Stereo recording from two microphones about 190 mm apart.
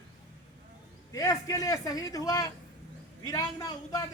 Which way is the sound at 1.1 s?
15° left (ahead or behind).